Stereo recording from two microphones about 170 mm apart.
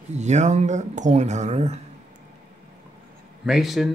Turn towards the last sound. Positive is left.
turn(degrees=0)  # may be behind; listen again after turning